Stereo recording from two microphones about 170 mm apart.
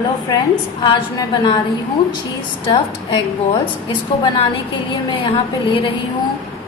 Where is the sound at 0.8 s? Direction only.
25° left (ahead or behind).